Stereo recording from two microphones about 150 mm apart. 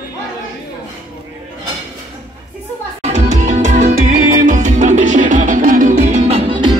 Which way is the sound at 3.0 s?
50° right (ahead or behind).